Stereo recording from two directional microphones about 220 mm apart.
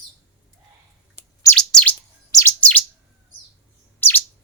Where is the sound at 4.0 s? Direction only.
10° left (ahead or behind).